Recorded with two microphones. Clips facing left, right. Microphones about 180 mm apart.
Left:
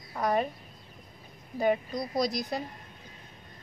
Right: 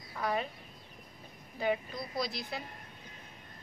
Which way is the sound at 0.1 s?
45° left (ahead or behind).